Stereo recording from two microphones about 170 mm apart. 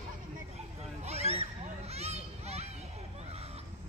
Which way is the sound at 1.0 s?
40° right (ahead or behind).